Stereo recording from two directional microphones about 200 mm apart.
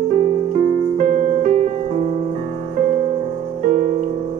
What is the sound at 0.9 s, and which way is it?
Music, 40° right (ahead or behind).